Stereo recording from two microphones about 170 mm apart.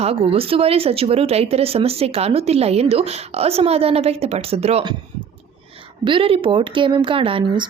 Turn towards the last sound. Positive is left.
turn(degrees=-30)  # may be behind; listen again after turning